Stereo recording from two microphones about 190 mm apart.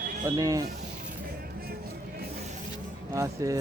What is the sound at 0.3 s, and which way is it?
Speech, 15° right (ahead or behind).